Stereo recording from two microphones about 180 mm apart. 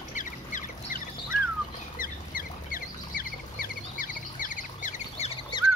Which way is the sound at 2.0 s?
50° left (ahead or behind).